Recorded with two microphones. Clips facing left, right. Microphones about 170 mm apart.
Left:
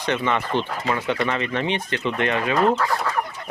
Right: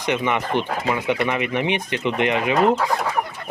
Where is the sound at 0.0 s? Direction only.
15° right (ahead or behind).